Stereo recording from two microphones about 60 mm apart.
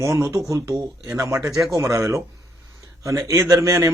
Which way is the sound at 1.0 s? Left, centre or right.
Right.